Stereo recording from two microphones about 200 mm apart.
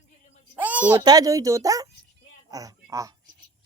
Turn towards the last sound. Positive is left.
turn(degrees=-15)  # may be behind; listen again after turning